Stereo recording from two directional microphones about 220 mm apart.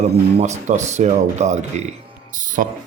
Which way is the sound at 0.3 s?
30° right (ahead or behind).